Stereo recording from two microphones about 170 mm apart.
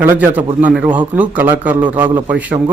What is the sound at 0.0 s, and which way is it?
A man's voice, 10° right (ahead or behind).